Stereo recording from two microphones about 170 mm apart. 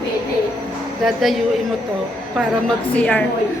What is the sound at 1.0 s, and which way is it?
Speech, centre (ahead or behind).